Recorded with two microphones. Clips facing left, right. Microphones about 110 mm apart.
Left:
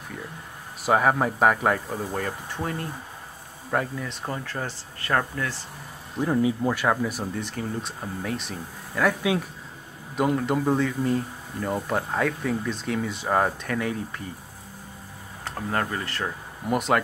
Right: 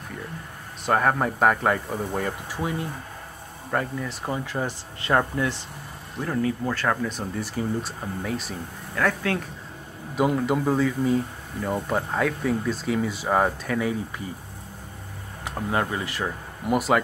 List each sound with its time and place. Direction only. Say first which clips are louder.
0.8 s speech: left 1 dB; 5° left (ahead or behind)
4.5 s speech: right 4 dB; 15° right (ahead or behind)
6.2 s speech: left 3 dB; 15° left (ahead or behind)
7.3 s speech: right 3 dB; 5° right (ahead or behind)
10.1 s speech: right 1 dB; centre (ahead or behind)
15.4 s speech: right 2 dB; 10° right (ahead or behind)